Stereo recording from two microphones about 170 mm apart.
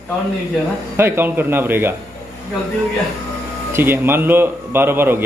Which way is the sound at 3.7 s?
15° right (ahead or behind).